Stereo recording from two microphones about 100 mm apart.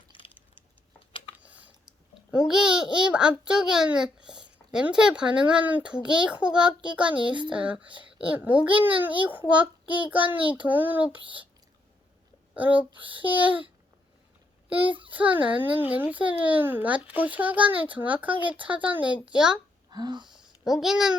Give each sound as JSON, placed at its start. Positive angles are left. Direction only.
{"t": 0.1, "sound": "a sound", "side_deg": 55}
{"t": 1.4, "sound": "typing", "side_deg": -15}
{"t": 2.3, "sound": "a child's voice", "side_deg": -5}
{"t": 12.5, "sound": "a child's voice", "side_deg": -15}
{"t": 14.7, "sound": "a child's voice", "side_deg": -15}
{"t": 19.9, "sound": "a sound", "side_deg": -45}
{"t": 20.7, "sound": "speech", "side_deg": -5}